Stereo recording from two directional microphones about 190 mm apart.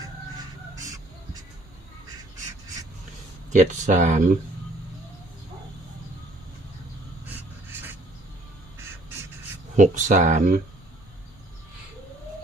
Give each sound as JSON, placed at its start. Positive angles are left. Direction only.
{"t": 3.5, "sound": "speech", "side_deg": -40}
{"t": 9.7, "sound": "speech", "side_deg": -40}